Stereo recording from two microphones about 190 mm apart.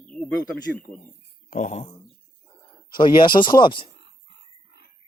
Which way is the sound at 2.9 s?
25° left (ahead or behind).